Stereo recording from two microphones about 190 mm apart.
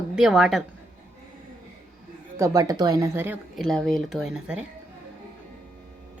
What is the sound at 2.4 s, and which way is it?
Speech, 20° right (ahead or behind).